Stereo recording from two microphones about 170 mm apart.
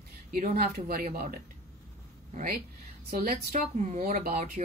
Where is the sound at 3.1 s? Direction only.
50° right (ahead or behind).